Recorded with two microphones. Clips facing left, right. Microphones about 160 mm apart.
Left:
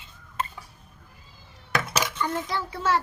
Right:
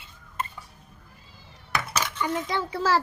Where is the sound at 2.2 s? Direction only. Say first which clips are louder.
Right 1 dB; 20° right (ahead or behind).